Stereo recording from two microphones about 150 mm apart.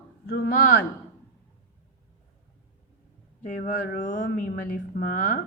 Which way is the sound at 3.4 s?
65° left (ahead or behind).